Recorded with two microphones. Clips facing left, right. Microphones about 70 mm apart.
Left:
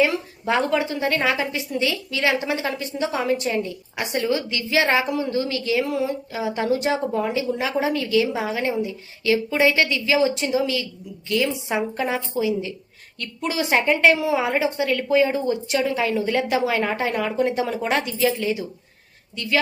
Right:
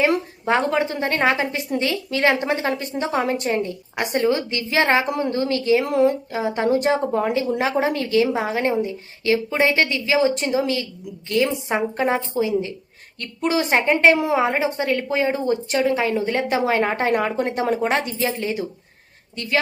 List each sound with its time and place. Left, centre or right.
0.4 s a woman's voice: right
5.8 s speech: right
6.3 s a woman's voice: right